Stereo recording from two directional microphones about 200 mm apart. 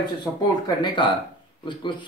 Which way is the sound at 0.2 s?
20° left (ahead or behind).